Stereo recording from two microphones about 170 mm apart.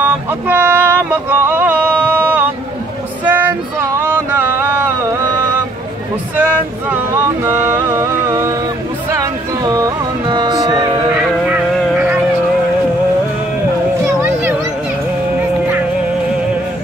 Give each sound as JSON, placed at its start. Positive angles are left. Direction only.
{"t": 0.0, "sound": "a sound", "side_deg": -10}
{"t": 3.3, "sound": "music", "side_deg": -10}
{"t": 7.6, "sound": "music", "side_deg": -15}
{"t": 9.1, "sound": "speech", "side_deg": -20}
{"t": 11.1, "sound": "music", "side_deg": -10}
{"t": 11.7, "sound": "a sound", "side_deg": -5}
{"t": 14.0, "sound": "children playing", "side_deg": -15}